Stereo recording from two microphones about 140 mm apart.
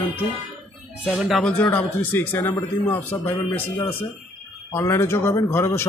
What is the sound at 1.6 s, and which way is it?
Speech, 10° left (ahead or behind).